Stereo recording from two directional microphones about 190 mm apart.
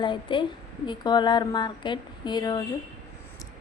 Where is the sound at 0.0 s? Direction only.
25° left (ahead or behind).